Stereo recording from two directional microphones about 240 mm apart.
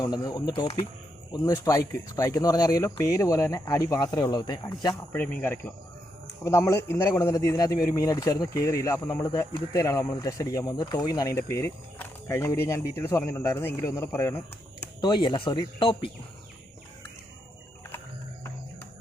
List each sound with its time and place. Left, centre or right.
0.0 s a man's voice: centre